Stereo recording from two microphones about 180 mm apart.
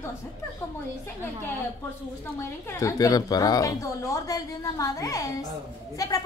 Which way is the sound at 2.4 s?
15° left (ahead or behind).